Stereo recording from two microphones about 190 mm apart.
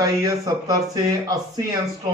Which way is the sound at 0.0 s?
20° right (ahead or behind).